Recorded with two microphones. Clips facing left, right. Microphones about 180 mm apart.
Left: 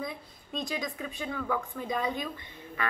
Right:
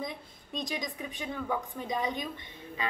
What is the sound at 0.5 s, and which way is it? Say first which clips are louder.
A woman's voice: left 2 dB; 15° right (ahead or behind).